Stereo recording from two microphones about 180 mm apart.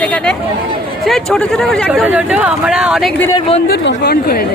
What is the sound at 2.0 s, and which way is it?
Speech, 10° right (ahead or behind).